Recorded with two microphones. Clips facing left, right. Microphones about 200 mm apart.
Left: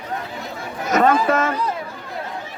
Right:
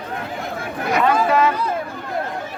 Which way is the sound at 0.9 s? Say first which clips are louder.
Left 1 dB; 45° left (ahead or behind).